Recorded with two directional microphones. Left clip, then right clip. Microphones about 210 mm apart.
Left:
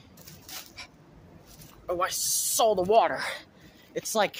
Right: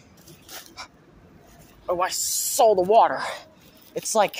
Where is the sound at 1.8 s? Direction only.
10° right (ahead or behind).